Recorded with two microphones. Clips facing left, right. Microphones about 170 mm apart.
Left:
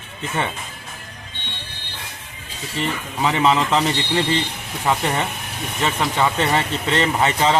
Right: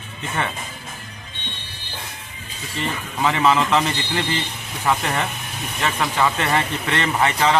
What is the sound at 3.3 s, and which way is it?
Speech, 25° left (ahead or behind).